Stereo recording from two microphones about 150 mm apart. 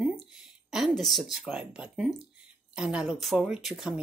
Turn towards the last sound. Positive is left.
turn(degrees=0)  # may be behind; listen again after turning